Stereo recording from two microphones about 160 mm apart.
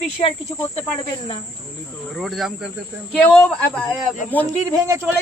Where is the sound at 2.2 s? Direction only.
Centre (ahead or behind).